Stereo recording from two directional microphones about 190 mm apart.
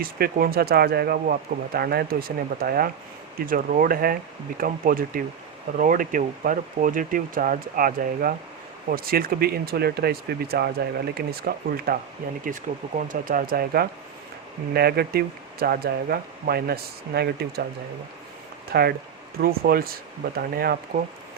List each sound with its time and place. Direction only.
0.0 s speech: 50° right (ahead or behind)
12.7 s speech: 35° right (ahead or behind); by 17.7 s 55° right (ahead or behind)
18.7 s speech: 55° right (ahead or behind)